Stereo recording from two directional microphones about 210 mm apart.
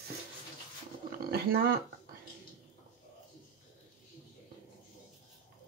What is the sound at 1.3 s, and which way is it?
Speech, 50° right (ahead or behind).